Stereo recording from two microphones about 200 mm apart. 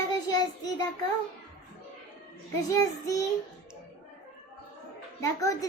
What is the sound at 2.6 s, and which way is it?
Speech, 15° left (ahead or behind).